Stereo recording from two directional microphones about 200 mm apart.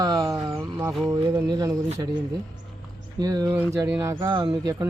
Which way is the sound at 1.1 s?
15° right (ahead or behind).